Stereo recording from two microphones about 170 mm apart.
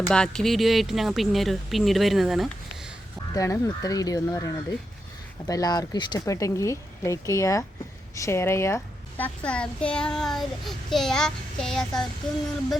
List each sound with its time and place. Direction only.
0.1 s a child's voice: 5° left (ahead or behind)
3.3 s a child's voice: 20° left (ahead or behind); by 12.4 s 5° left (ahead or behind)